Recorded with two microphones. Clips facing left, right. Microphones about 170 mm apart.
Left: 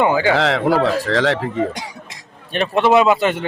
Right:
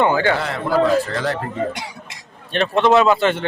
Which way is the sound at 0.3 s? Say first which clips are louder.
Left 3 dB; 90° left.